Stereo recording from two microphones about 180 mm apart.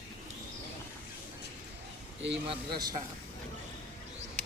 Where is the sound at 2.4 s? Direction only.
25° right (ahead or behind).